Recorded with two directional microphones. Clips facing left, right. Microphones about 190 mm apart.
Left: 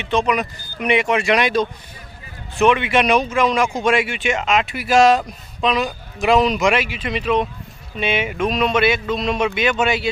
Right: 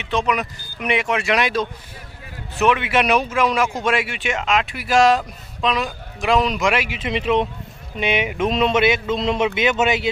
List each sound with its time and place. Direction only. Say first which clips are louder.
0.0 s speech: left 2 dB; centre (ahead or behind)
6.8 s speech: even; 20° right (ahead or behind)